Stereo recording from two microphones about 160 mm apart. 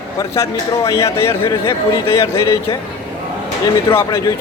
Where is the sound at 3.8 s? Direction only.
15° left (ahead or behind).